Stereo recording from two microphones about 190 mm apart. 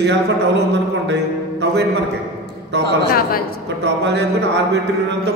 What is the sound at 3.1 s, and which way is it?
Speech, 50° left (ahead or behind).